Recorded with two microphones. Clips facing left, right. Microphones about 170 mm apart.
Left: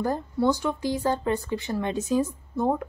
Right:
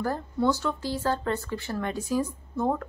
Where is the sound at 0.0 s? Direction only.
15° left (ahead or behind).